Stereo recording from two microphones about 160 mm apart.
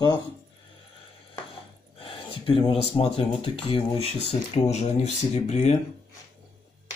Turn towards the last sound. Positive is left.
turn(degrees=45)  # may be behind; listen again after turning